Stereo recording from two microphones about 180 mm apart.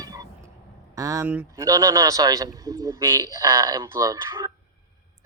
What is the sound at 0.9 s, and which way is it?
A man's voice, 20° right (ahead or behind).